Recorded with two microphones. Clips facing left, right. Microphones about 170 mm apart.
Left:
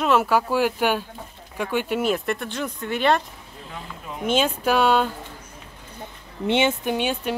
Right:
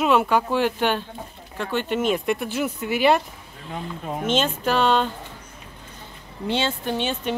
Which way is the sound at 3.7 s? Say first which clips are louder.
Right 7 dB; 45° right (ahead or behind).